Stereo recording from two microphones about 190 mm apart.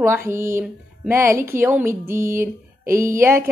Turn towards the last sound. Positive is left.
turn(degrees=-15)  # may be behind; listen again after turning